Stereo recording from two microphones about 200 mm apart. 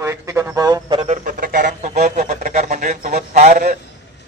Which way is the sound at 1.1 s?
45° right (ahead or behind).